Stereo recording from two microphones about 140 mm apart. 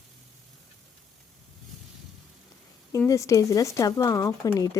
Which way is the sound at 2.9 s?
20° left (ahead or behind).